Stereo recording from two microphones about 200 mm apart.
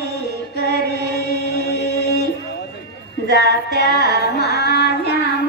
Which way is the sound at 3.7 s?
55° left (ahead or behind).